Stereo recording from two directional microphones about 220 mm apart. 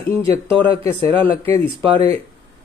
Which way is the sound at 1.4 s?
25° right (ahead or behind).